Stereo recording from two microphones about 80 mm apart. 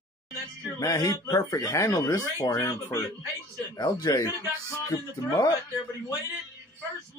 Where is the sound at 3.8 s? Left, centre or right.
Left.